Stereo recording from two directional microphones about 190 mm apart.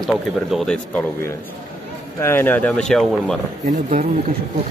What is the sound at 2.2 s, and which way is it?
Speech, 10° left (ahead or behind).